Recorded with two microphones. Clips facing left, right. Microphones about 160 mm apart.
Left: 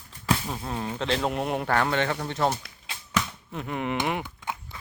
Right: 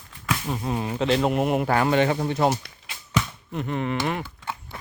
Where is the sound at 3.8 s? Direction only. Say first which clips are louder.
Even; 15° left (ahead or behind).